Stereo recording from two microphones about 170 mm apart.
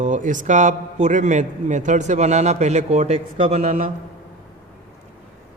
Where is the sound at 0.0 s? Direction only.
45° right (ahead or behind).